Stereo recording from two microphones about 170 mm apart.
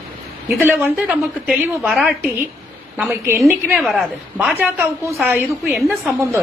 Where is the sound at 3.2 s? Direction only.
15° right (ahead or behind).